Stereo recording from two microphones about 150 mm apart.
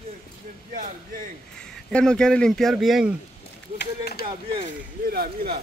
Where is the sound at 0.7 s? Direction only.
65° right (ahead or behind).